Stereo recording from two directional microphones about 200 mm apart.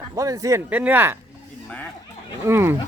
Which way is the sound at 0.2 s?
15° right (ahead or behind).